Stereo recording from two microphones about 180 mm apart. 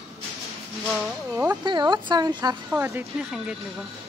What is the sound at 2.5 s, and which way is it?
Speech, 10° right (ahead or behind).